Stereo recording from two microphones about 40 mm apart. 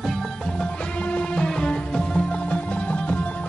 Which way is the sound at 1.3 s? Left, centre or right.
Left.